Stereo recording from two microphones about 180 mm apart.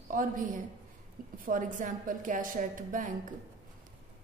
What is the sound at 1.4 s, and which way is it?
A woman's voice, 50° right (ahead or behind).